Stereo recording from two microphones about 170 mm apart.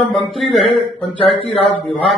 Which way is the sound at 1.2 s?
35° left (ahead or behind).